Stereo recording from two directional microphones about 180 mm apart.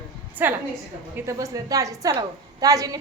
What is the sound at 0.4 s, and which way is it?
A woman's voice, 10° right (ahead or behind).